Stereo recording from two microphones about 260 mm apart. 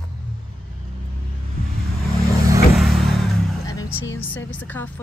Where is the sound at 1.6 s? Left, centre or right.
Right.